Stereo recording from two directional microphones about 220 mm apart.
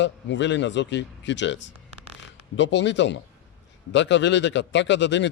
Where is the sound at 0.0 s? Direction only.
55° left (ahead or behind).